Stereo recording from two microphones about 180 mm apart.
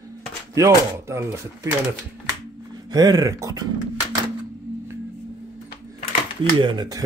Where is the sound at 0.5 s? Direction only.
15° right (ahead or behind).